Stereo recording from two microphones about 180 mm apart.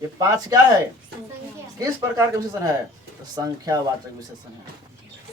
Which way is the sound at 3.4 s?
20° right (ahead or behind).